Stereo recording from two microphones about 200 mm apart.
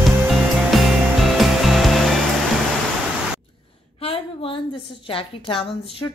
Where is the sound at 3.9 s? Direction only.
30° left (ahead or behind).